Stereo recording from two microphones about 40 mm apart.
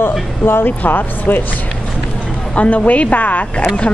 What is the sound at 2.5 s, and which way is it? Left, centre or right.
Speech, left.